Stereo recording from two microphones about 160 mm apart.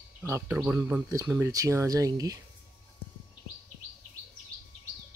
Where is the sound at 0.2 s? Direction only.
15° right (ahead or behind).